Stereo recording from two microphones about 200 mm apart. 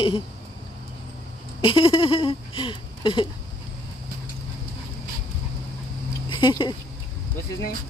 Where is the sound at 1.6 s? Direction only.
25° left (ahead or behind).